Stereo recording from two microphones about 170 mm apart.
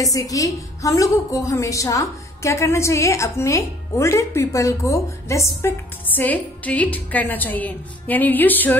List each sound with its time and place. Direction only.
0.0 s a woman's voice: 20° left (ahead or behind)